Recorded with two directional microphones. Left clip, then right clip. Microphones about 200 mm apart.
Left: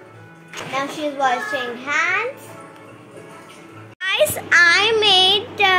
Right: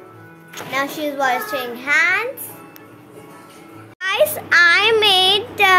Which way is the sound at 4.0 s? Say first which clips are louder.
Right 1 dB; 15° right (ahead or behind).